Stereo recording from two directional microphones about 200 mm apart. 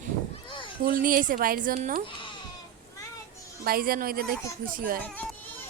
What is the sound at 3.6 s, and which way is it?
Speech, 45° right (ahead or behind).